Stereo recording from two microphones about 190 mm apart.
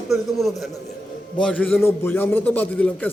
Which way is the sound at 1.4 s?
5° left (ahead or behind).